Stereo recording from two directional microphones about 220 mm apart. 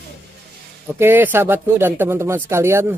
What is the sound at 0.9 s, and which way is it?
Speech, 10° right (ahead or behind).